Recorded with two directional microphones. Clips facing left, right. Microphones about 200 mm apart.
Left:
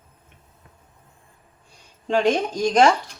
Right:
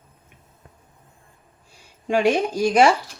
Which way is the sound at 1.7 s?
10° right (ahead or behind).